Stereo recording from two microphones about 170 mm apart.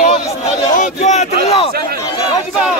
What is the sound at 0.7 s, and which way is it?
Speech, 45° left (ahead or behind).